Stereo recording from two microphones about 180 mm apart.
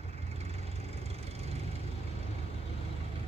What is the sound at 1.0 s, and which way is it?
Vehicle, 35° right (ahead or behind).